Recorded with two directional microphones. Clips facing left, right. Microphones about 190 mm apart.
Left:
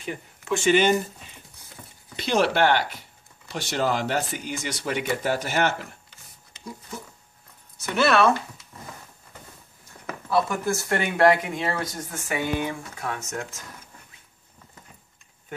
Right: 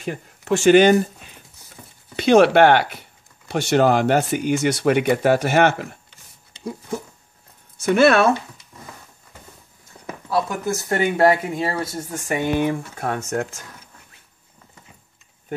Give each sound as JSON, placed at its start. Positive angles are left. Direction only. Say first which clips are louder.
{"t": 0.0, "sound": "speech", "louder": "right 5 dB", "side_deg": -45}
{"t": 2.1, "sound": "speech", "louder": "right 9 dB", "side_deg": -60}
{"t": 7.8, "sound": "speech", "louder": "right 6 dB", "side_deg": -50}
{"t": 10.3, "sound": "speech", "louder": "right 1 dB", "side_deg": 0}
{"t": 10.8, "sound": "speech", "louder": "right 4 dB", "side_deg": -25}
{"t": 12.3, "sound": "speech", "louder": "right 6 dB", "side_deg": -50}